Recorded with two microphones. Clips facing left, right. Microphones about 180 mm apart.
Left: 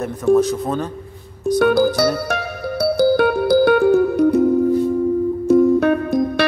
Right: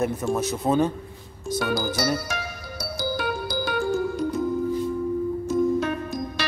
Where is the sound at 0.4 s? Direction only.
5° right (ahead or behind).